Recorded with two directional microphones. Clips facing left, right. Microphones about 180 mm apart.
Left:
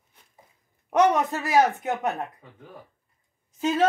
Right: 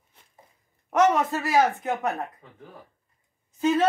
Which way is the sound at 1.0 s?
15° left (ahead or behind).